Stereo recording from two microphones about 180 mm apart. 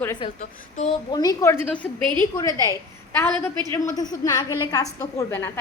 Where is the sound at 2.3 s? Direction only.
20° left (ahead or behind).